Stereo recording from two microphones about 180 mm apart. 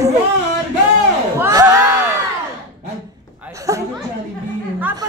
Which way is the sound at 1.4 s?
20° right (ahead or behind).